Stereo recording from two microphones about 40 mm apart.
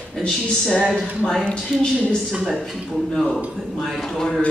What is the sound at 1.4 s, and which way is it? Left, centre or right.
Speech, left.